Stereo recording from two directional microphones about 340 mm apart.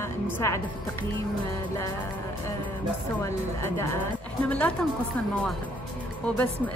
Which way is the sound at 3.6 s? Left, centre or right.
Centre.